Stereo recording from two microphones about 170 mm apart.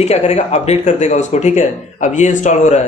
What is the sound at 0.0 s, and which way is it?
Speech, 40° left (ahead or behind).